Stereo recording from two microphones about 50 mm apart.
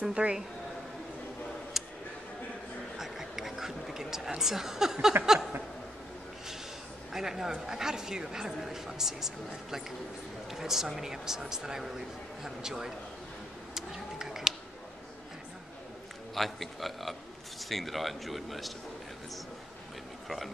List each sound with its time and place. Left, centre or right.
0.0 s speech: centre
3.0 s a sound: centre
5.2 s a woman's voice: centre
7.1 s a woman's voice: centre
13.7 s a sound: centre
16.3 s speech: centre
20.2 s speech: centre